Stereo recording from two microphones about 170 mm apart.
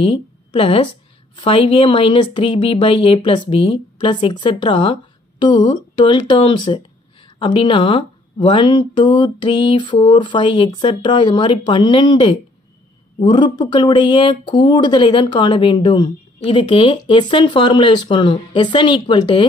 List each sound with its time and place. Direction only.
0.0 s a woman's voice: 30° left (ahead or behind)